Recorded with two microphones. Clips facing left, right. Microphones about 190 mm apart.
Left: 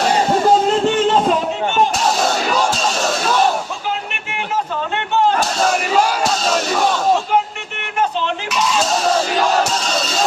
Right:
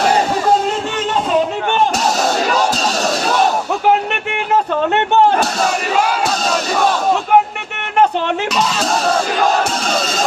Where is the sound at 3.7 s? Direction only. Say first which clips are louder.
Right 10 dB; 65° right (ahead or behind).